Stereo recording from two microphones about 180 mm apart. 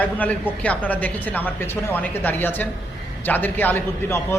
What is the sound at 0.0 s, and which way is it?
A man's voice, 10° left (ahead or behind).